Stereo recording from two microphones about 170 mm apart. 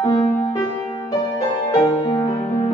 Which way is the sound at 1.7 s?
25° left (ahead or behind).